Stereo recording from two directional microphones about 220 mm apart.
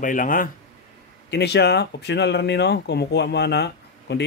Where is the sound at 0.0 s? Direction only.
35° left (ahead or behind).